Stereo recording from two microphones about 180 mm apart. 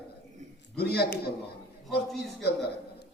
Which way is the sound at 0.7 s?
60° left (ahead or behind).